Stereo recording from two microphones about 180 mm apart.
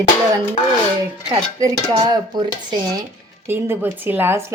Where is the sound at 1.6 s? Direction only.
20° right (ahead or behind).